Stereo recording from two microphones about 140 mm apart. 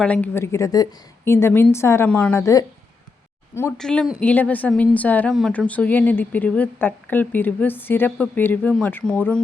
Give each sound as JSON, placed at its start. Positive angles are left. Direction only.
{"t": 0.0, "sound": "a woman's voice", "side_deg": 10}
{"t": 0.3, "sound": "a woman's voice", "side_deg": 20}
{"t": 3.8, "sound": "a woman's voice", "side_deg": 5}